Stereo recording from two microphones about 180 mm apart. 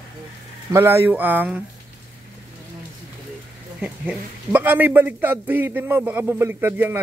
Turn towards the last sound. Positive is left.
turn(degrees=-10)  # may be behind; listen again after turning